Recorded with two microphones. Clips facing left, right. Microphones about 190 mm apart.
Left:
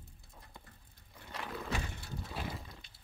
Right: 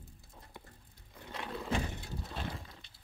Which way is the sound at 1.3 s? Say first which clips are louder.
Right 3 dB; centre (ahead or behind).